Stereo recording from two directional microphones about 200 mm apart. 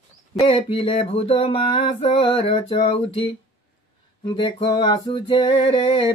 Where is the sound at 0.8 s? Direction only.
30° left (ahead or behind).